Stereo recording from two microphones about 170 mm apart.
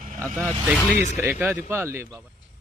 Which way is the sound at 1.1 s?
10° right (ahead or behind).